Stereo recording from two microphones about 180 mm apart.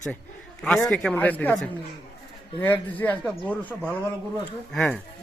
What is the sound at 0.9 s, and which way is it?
Speech, 5° left (ahead or behind).